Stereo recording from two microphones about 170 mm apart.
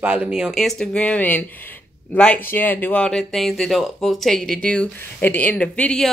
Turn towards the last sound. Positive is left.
turn(degrees=5)  # may be behind; listen again after turning